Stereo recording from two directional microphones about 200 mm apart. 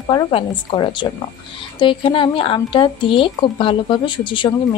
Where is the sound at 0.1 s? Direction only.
25° left (ahead or behind).